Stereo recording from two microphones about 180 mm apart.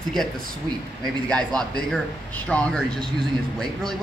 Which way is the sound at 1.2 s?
5° left (ahead or behind).